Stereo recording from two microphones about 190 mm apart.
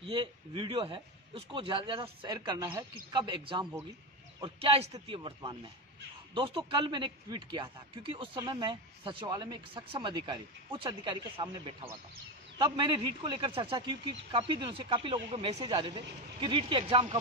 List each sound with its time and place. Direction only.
0.0 s speech: 25° right (ahead or behind)